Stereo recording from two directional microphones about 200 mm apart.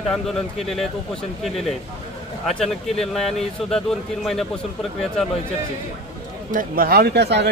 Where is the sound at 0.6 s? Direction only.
Centre (ahead or behind).